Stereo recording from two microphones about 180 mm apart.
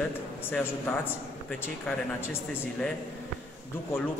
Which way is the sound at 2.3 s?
5° left (ahead or behind).